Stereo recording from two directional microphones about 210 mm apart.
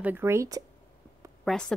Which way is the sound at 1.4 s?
5° left (ahead or behind).